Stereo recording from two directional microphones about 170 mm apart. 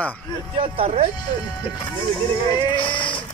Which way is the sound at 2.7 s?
30° left (ahead or behind).